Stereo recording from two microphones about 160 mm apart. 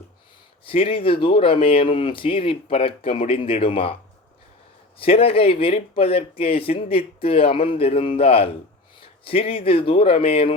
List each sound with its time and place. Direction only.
0.6 s speech: 35° left (ahead or behind)
4.9 s speech: 35° left (ahead or behind)